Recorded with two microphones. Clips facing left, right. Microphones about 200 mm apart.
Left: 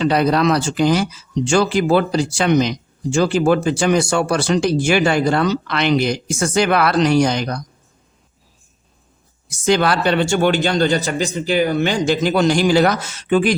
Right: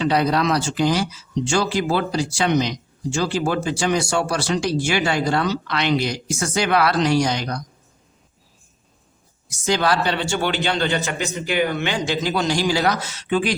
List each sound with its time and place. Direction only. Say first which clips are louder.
0.1 s speech: left 3 dB; 60° left (ahead or behind)
9.5 s a man's voice: left 4 dB; 60° left (ahead or behind)